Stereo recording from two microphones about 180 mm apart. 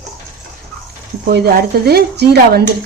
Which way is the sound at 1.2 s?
55° right (ahead or behind).